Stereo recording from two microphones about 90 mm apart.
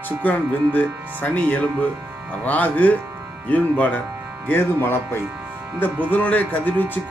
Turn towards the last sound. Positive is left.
turn(degrees=15)  # may be behind; listen again after turning